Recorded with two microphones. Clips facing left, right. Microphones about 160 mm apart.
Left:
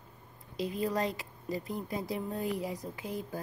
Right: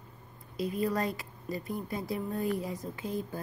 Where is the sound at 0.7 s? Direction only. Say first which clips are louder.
Right 1 dB; 20° left (ahead or behind).